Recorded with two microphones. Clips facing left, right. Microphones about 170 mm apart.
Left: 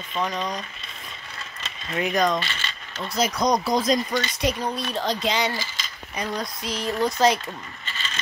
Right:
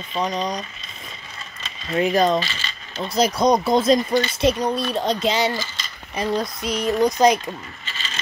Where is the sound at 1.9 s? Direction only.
30° right (ahead or behind).